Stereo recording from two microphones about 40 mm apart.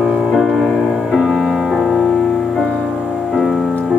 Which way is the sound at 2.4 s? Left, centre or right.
Centre.